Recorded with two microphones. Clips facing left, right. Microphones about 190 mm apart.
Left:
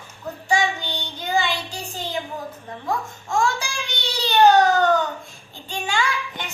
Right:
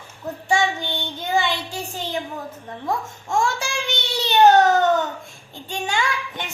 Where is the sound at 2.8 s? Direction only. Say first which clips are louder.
Right 1 dB; 25° right (ahead or behind).